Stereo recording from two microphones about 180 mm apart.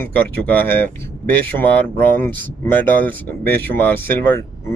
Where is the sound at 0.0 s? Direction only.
10° left (ahead or behind).